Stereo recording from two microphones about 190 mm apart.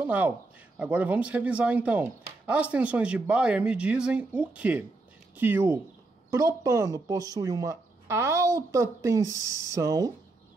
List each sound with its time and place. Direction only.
0.0 s speech: 10° right (ahead or behind)